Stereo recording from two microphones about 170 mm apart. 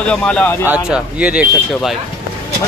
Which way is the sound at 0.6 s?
10° right (ahead or behind).